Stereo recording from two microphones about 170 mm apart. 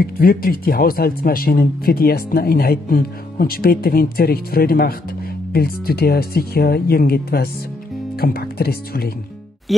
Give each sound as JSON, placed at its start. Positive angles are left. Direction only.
{"t": 0.0, "sound": "speech", "side_deg": 60}
{"t": 9.7, "sound": "music", "side_deg": 0}